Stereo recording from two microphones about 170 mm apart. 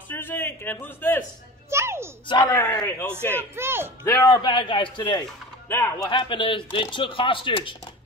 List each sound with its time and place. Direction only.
0.1 s a man's voice: 10° left (ahead or behind)
1.7 s a sound: 15° right (ahead or behind)
2.2 s speech: 25° left (ahead or behind)
2.5 s a man's voice: 10° left (ahead or behind)
3.5 s speech: 15° right (ahead or behind)
4.0 s speech: 20° left (ahead or behind)
5.7 s a man's voice: 15° left (ahead or behind)
6.0 s speech: 30° left (ahead or behind)